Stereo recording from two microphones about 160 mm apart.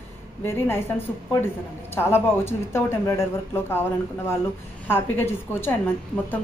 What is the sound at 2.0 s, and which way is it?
A woman's voice, 15° left (ahead or behind).